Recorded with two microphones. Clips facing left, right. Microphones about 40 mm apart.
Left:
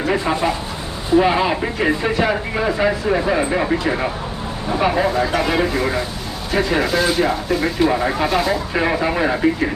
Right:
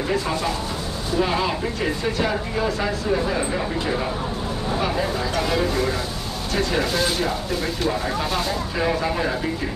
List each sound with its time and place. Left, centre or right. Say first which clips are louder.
0.0 s speech: left 5 dB; left
5.0 s speech: left 6 dB; centre
7.8 s speech: left 7 dB; centre
8.3 s speech: left 6 dB; centre
8.7 s speech: left 3 dB; left